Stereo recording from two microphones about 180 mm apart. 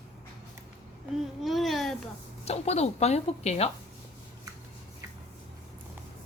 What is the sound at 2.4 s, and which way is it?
Speech, 35° left (ahead or behind).